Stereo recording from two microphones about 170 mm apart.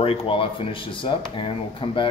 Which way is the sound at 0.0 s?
35° left (ahead or behind).